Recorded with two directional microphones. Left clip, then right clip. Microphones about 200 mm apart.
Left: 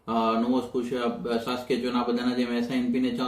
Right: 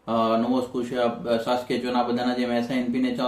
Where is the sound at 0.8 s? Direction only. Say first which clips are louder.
Right 3 dB; 5° right (ahead or behind).